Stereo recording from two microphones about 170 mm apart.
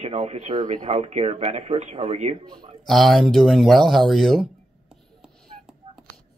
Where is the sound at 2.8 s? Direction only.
Centre (ahead or behind).